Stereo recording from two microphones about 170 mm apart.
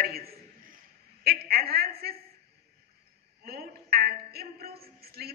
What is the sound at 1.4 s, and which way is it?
Speech, 65° right (ahead or behind).